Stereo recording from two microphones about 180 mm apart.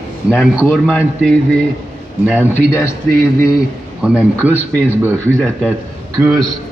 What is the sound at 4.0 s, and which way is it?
Speech, 5° right (ahead or behind).